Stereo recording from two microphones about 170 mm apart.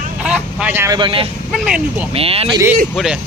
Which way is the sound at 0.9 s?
30° right (ahead or behind).